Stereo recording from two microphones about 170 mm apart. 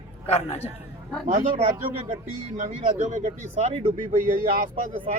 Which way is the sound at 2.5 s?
50° right (ahead or behind).